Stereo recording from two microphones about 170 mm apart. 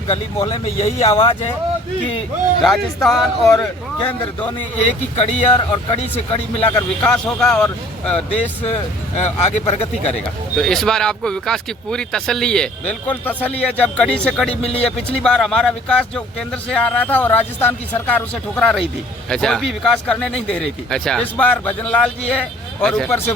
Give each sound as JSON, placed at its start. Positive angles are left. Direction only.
{"t": 0.3, "sound": "speech", "side_deg": 20}
{"t": 0.6, "sound": "speech", "side_deg": 40}
{"t": 2.6, "sound": "a man's voice", "side_deg": 0}
{"t": 4.9, "sound": "speech", "side_deg": 40}
{"t": 6.7, "sound": "speech", "side_deg": 10}
{"t": 8.3, "sound": "speech", "side_deg": 40}
{"t": 10.2, "sound": "a man's voice", "side_deg": 5}
{"t": 14.5, "sound": "speech", "side_deg": 35}
{"t": 14.8, "sound": "a man's voice", "side_deg": 5}